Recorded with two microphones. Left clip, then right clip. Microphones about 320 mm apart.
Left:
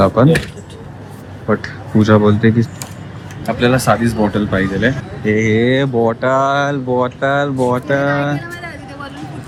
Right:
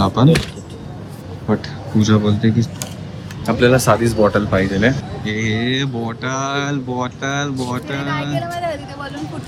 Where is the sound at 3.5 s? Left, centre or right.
Centre.